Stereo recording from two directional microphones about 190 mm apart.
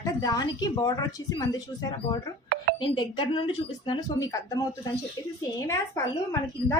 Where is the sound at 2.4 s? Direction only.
55° right (ahead or behind).